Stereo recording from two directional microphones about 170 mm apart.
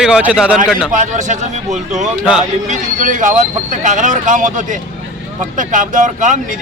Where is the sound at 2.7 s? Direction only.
50° right (ahead or behind).